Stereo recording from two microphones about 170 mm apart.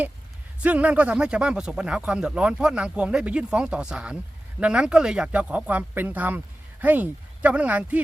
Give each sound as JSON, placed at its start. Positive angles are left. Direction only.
{"t": 0.6, "sound": "speech", "side_deg": -10}